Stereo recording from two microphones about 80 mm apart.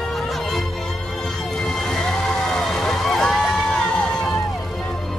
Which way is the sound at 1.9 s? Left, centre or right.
Centre.